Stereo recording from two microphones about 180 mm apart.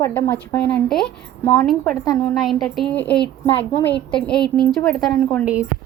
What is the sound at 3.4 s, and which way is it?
Speech, 30° left (ahead or behind).